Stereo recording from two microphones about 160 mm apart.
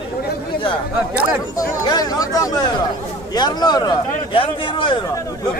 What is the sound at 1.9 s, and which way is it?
A man's voice, 25° left (ahead or behind).